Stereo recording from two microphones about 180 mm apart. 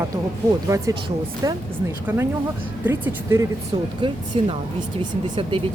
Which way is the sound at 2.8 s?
10° right (ahead or behind).